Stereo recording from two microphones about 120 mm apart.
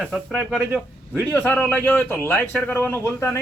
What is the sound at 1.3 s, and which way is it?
A man's voice, 15° left (ahead or behind).